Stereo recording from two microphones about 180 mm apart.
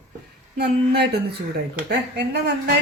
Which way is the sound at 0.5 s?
65° right (ahead or behind).